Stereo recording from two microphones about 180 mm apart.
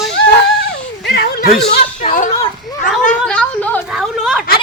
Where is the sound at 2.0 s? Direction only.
45° left (ahead or behind).